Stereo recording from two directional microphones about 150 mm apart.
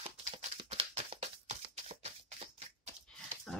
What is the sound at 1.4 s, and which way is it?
Shuffling cards, 45° right (ahead or behind).